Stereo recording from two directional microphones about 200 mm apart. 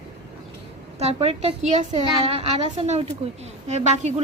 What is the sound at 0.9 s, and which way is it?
A woman's voice, 30° right (ahead or behind).